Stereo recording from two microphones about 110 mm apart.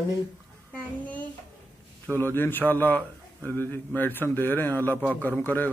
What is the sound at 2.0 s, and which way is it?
A man's voice, 20° left (ahead or behind).